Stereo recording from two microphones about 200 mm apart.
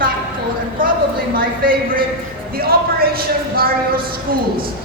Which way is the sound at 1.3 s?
45° right (ahead or behind).